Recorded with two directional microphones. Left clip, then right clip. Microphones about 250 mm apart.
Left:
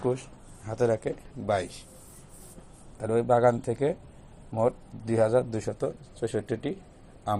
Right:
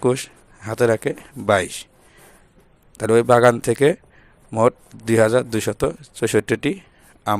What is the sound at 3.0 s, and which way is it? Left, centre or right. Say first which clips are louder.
Speech: right 9 dB; right.